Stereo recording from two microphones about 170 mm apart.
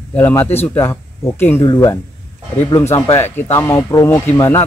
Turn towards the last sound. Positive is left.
turn(degrees=15)  # may be behind; listen again after turning